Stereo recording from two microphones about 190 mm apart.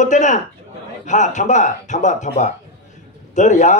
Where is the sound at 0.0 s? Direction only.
40° left (ahead or behind).